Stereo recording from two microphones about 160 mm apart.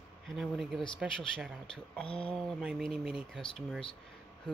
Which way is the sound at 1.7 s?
5° left (ahead or behind).